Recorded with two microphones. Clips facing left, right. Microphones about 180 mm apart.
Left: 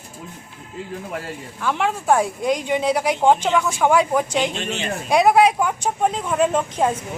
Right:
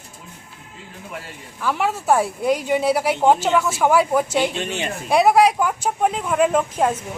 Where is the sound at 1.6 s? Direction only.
5° right (ahead or behind).